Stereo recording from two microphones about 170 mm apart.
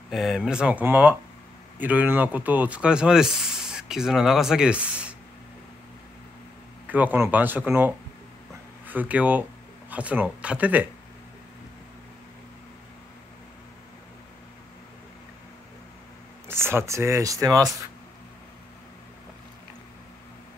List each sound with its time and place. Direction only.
0.1 s speech: centre (ahead or behind)
6.9 s speech: 10° right (ahead or behind)
16.4 s speech: 15° right (ahead or behind)